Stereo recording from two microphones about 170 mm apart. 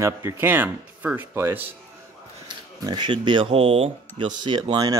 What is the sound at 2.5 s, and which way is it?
Speech, 25° right (ahead or behind).